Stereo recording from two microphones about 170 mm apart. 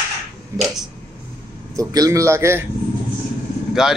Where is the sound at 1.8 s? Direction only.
20° right (ahead or behind).